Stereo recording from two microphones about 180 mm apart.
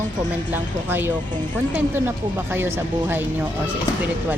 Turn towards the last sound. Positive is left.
turn(degrees=-15)  # may be behind; listen again after turning